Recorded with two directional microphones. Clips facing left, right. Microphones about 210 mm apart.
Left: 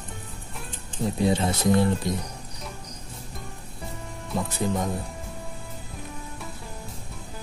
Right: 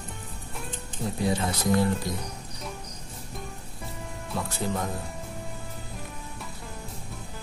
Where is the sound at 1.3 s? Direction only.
25° left (ahead or behind).